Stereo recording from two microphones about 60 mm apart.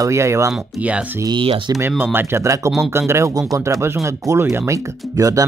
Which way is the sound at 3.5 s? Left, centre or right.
Right.